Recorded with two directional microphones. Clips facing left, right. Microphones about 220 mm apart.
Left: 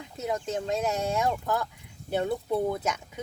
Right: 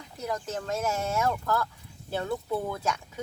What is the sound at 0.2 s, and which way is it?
Speech, 20° left (ahead or behind).